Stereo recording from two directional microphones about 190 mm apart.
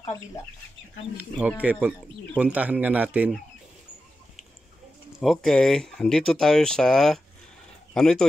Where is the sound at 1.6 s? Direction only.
10° right (ahead or behind).